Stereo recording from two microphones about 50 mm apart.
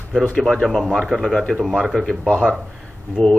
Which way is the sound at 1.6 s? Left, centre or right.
Centre.